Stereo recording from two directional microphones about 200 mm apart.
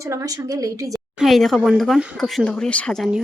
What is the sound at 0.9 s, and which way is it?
Speech, centre (ahead or behind).